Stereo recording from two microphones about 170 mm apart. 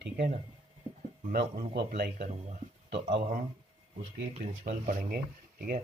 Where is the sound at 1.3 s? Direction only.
70° right (ahead or behind).